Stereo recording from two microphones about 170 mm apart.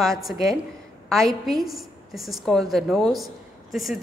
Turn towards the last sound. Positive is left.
turn(degrees=0)  # may be behind; listen again after turning